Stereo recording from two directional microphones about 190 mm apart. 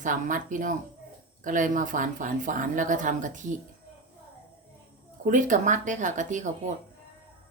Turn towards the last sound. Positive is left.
turn(degrees=-40)  # may be behind; listen again after turning